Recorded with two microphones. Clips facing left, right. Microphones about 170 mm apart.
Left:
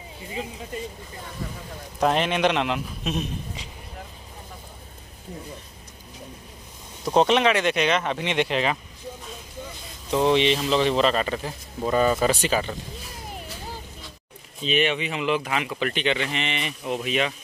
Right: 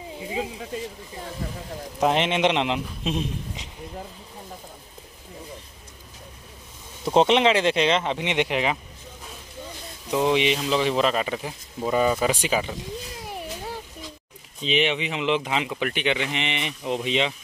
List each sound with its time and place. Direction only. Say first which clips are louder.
2.0 s a man's voice: even; 20° right (ahead or behind)
7.2 s a man's voice: right 1 dB; 20° right (ahead or behind)
10.1 s speech: left 1 dB; 10° right (ahead or behind)
14.6 s speech: even; 15° right (ahead or behind)